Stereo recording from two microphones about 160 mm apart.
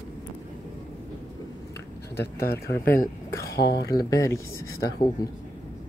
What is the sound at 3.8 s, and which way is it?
Speech, 20° left (ahead or behind).